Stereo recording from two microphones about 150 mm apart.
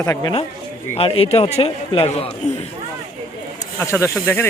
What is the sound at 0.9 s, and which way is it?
A man's voice, 40° left (ahead or behind).